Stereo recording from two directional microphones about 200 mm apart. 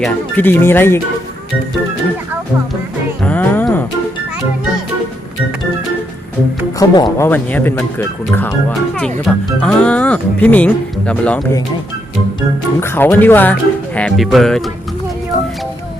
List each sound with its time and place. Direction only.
0.0 s speech: 10° left (ahead or behind)
3.2 s music: 10° left (ahead or behind)
6.7 s speech: 20° left (ahead or behind)
7.3 s speech: 10° left (ahead or behind)
12.8 s speech: 10° left (ahead or behind)